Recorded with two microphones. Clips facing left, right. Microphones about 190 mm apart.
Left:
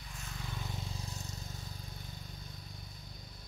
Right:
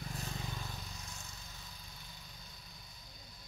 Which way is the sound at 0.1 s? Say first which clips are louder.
Right 1 dB; 35° right (ahead or behind).